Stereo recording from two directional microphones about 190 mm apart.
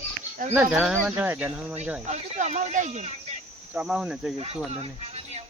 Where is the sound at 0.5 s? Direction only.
5° right (ahead or behind).